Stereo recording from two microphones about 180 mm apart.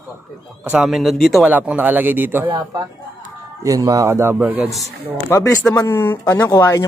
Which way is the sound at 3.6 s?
20° right (ahead or behind).